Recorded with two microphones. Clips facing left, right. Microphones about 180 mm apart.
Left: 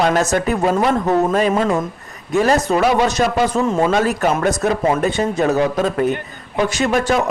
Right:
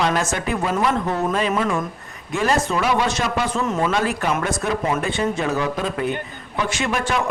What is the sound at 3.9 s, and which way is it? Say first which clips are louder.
A man's voice: left 5 dB; 45° left (ahead or behind).